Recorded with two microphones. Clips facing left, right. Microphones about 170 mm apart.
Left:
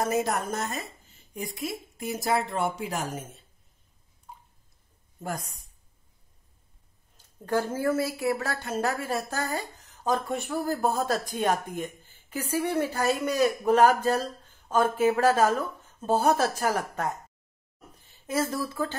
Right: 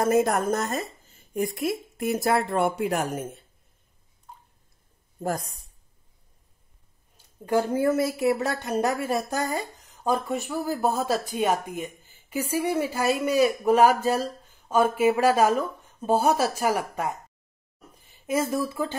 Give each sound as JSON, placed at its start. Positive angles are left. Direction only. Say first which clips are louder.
{"t": 0.0, "sound": "a woman's voice", "louder": "right 5 dB", "side_deg": -50}
{"t": 1.3, "sound": "speech", "louder": "right 7 dB", "side_deg": -60}
{"t": 5.2, "sound": "a woman's voice", "louder": "right 6 dB", "side_deg": -35}
{"t": 7.4, "sound": "a woman's voice", "louder": "right 4 dB", "side_deg": -15}